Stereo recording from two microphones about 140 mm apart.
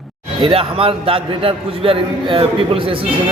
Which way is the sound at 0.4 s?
40° right (ahead or behind).